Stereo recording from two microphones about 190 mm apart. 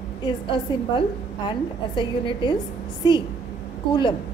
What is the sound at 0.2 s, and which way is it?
A woman's voice, 25° left (ahead or behind).